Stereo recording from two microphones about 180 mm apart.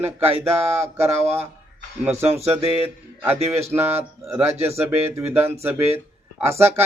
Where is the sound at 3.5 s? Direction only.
15° right (ahead or behind).